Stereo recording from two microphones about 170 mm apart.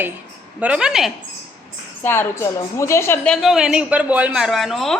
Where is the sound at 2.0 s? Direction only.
15° left (ahead or behind).